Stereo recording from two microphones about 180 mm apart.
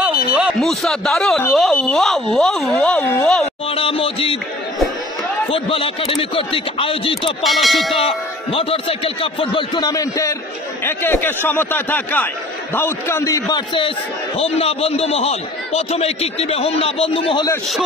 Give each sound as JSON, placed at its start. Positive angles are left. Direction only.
{"t": 0.0, "sound": "speech", "side_deg": 0}
{"t": 3.7, "sound": "music", "side_deg": 30}
{"t": 5.5, "sound": "speech", "side_deg": 30}
{"t": 7.4, "sound": "speech", "side_deg": 0}
{"t": 8.5, "sound": "a man's voice", "side_deg": 30}